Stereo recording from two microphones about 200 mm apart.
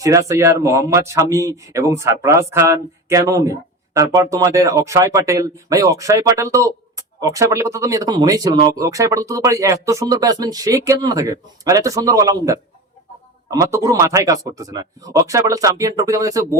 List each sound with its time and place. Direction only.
0.0 s speech: 15° right (ahead or behind)